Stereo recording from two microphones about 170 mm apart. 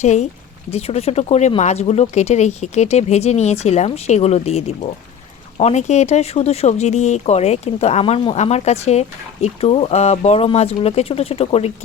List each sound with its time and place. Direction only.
0.0 s speech: 40° left (ahead or behind)